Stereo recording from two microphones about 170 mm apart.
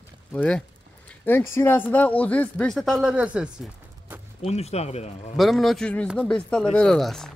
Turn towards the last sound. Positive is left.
turn(degrees=0)  # may be behind; listen again after turning